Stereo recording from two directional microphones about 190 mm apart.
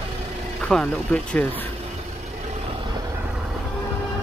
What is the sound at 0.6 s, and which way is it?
Speech, 5° left (ahead or behind).